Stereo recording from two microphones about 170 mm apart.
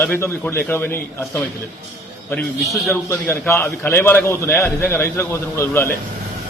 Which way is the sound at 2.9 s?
15° left (ahead or behind).